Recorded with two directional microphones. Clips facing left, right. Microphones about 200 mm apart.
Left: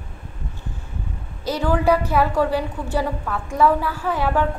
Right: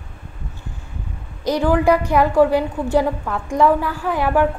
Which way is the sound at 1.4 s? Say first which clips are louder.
Right 4 dB; 15° right (ahead or behind).